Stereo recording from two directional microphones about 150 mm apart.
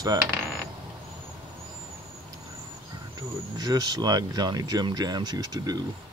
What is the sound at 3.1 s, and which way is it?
Speech, 25° right (ahead or behind).